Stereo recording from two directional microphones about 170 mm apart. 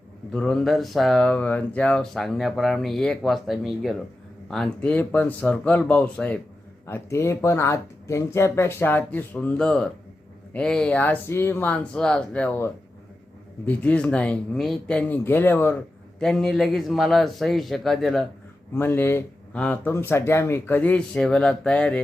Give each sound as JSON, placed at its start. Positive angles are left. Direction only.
{"t": 0.3, "sound": "speech", "side_deg": 5}
{"t": 16.2, "sound": "speech", "side_deg": 0}
{"t": 18.7, "sound": "speech", "side_deg": 15}